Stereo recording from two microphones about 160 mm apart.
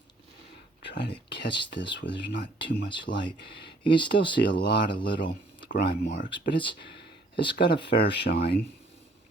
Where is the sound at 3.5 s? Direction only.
90° left.